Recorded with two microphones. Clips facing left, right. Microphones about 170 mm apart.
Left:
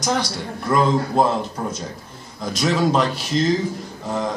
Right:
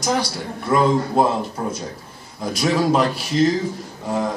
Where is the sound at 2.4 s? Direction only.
5° right (ahead or behind).